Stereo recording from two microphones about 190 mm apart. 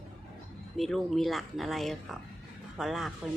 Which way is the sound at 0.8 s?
Centre (ahead or behind).